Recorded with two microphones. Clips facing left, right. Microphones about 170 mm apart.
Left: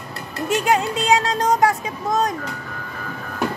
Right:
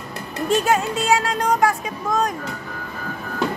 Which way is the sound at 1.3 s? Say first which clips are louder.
Left 1 dB; 40° left (ahead or behind).